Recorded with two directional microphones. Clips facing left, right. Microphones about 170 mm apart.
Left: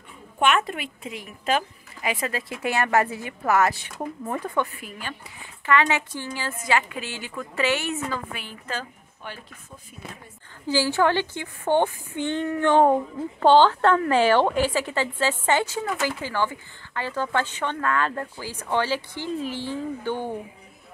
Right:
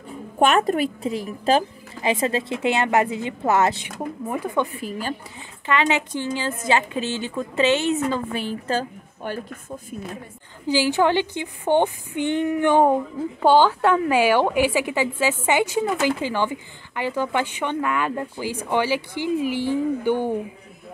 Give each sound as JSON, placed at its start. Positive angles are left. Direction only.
{"t": 0.4, "sound": "a woman's voice", "side_deg": -40}
{"t": 4.8, "sound": "speech", "side_deg": -35}
{"t": 5.7, "sound": "a woman's voice", "side_deg": -20}
{"t": 9.2, "sound": "speech", "side_deg": -45}
{"t": 10.7, "sound": "speech", "side_deg": -15}